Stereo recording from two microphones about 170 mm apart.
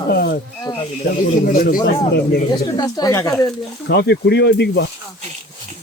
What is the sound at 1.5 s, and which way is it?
Speech, 55° left (ahead or behind).